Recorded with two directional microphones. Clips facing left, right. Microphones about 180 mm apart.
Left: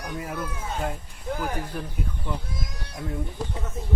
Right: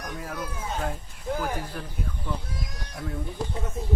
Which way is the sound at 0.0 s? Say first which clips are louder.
Left 2 dB; 10° left (ahead or behind).